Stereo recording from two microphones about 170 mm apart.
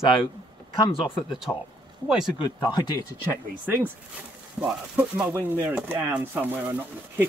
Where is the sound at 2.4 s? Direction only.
25° left (ahead or behind).